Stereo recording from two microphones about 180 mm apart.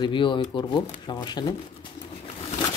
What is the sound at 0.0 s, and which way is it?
Speech, 25° left (ahead or behind).